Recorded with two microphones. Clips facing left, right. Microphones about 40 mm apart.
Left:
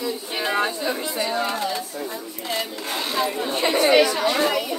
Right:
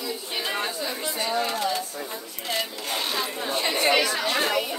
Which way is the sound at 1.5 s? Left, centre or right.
Left.